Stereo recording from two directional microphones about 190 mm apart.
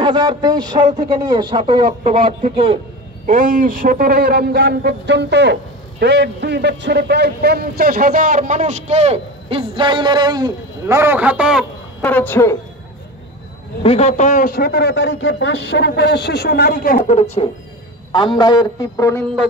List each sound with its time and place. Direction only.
0.0 s a man's voice: 25° right (ahead or behind)
3.3 s a man's voice: 45° right (ahead or behind); by 11.6 s 5° right (ahead or behind)
12.0 s speech: 10° left (ahead or behind)
13.8 s a man's voice: 35° left (ahead or behind); by 17.0 s 50° left (ahead or behind)
17.0 s speech: 35° left (ahead or behind)
18.1 s a man's voice: 25° left (ahead or behind)